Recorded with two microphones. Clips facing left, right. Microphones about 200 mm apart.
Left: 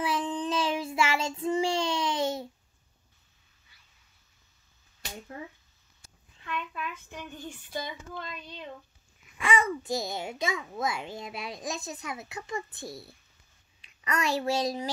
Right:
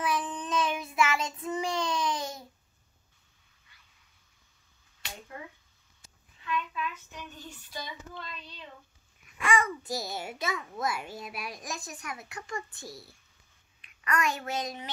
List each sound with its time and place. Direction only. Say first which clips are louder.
0.0 s child singing: left 2 dB; 25° left (ahead or behind)
6.4 s a sound: right 2 dB; 55° left (ahead or behind)
9.5 s a child's voice: left 1 dB; 20° left (ahead or behind)
12.7 s a child's voice: left 4 dB; centre (ahead or behind)
13.8 s a child's voice: even; 30° left (ahead or behind)